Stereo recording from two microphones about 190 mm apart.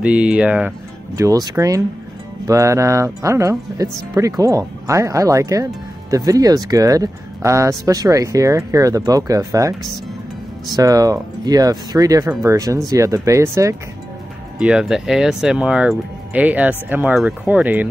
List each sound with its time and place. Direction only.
0.0 s speech: 5° right (ahead or behind)
14.6 s speech: 5° right (ahead or behind)